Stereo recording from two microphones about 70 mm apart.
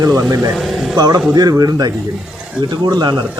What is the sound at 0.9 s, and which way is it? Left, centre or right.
Speech, right.